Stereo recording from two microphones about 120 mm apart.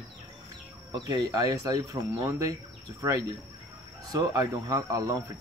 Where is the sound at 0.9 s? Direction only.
35° right (ahead or behind).